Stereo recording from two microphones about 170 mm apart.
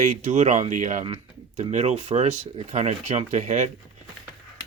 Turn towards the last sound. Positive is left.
turn(degrees=-45)  # may be behind; listen again after turning